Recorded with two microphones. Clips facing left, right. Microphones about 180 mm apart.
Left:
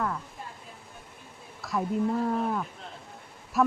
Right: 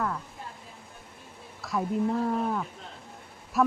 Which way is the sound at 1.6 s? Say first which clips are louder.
Even; centre (ahead or behind).